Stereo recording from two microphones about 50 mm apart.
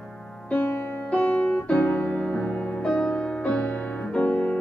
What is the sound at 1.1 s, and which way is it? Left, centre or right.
Music, left.